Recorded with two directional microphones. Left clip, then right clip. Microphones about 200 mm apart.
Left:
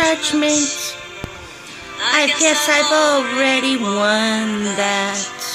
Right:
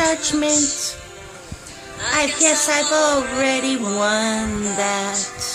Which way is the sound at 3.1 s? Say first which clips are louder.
Left 3 dB; 35° left (ahead or behind).